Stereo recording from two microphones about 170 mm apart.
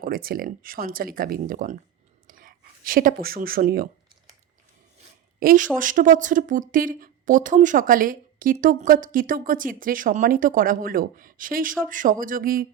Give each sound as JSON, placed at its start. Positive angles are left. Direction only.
{"t": 0.0, "sound": "speech", "side_deg": -60}
{"t": 2.2, "sound": "whispering", "side_deg": -55}
{"t": 5.4, "sound": "a woman's voice", "side_deg": -55}